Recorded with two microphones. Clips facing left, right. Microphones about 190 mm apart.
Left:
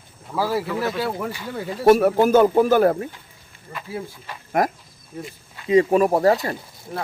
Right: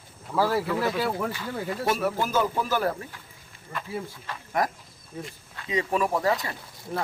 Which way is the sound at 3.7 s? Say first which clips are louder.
Left 2 dB; 5° left (ahead or behind).